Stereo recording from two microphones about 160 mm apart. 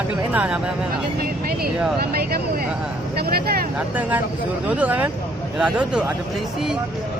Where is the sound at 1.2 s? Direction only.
70° right (ahead or behind).